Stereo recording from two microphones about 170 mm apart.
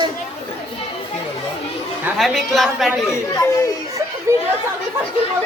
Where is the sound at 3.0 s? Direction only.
20° left (ahead or behind).